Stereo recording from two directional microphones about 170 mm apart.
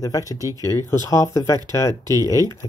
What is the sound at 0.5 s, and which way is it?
Speech, 20° right (ahead or behind).